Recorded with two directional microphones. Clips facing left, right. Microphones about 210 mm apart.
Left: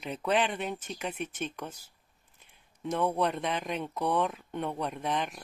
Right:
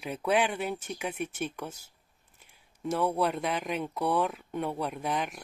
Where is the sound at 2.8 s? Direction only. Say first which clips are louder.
Right 1 dB; 5° right (ahead or behind).